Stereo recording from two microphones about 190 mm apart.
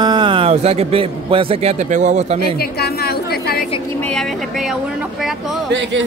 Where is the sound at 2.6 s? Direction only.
55° left (ahead or behind).